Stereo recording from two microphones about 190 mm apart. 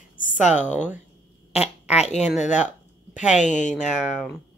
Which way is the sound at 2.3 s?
40° left (ahead or behind).